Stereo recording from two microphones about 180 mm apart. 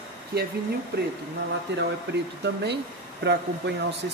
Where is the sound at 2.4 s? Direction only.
70° right (ahead or behind).